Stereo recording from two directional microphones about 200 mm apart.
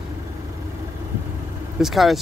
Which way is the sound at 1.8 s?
Centre (ahead or behind).